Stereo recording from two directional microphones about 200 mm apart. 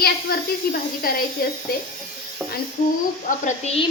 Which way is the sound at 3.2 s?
35° left (ahead or behind).